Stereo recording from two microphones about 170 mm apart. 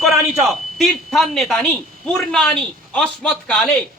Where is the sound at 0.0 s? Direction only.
Centre (ahead or behind).